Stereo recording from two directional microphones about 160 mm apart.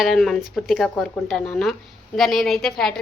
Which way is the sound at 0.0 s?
Centre (ahead or behind).